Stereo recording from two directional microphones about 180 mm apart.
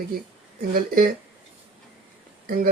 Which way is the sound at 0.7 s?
55° right (ahead or behind).